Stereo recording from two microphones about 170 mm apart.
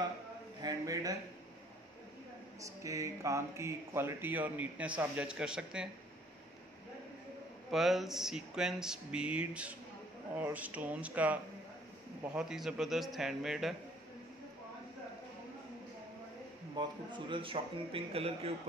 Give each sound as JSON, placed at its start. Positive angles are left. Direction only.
{"t": 0.6, "sound": "a man's voice", "side_deg": -20}
{"t": 2.6, "sound": "speech", "side_deg": -20}
{"t": 7.7, "sound": "speech", "side_deg": 0}
{"t": 12.4, "sound": "speech", "side_deg": -5}
{"t": 16.7, "sound": "a man's voice", "side_deg": -30}